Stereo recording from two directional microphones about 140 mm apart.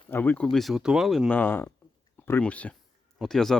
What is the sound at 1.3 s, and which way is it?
Speech, 10° left (ahead or behind).